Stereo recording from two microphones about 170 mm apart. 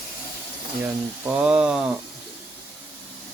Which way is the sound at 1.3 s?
5° right (ahead or behind).